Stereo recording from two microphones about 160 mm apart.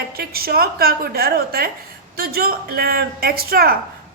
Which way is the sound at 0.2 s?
70° right (ahead or behind).